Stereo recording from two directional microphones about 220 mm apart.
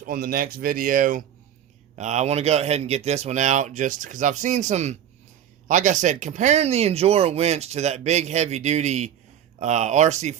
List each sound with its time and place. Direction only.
0.0 s speech: 40° right (ahead or behind)